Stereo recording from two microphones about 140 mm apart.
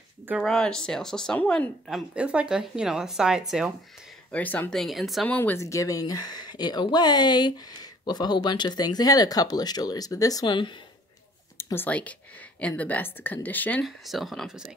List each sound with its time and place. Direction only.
0.4 s speech: 5° left (ahead or behind)
1.9 s speech: 5° right (ahead or behind)
4.3 s speech: 10° left (ahead or behind)
5.3 s speech: 15° left (ahead or behind); by 10.7 s 35° left (ahead or behind)
11.5 s speech: 15° left (ahead or behind)
13.8 s speech: centre (ahead or behind)